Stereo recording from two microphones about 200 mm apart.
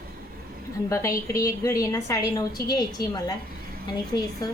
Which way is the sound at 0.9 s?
15° left (ahead or behind).